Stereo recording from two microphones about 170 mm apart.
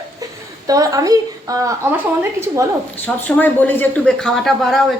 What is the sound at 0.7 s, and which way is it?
A woman's voice, 20° right (ahead or behind).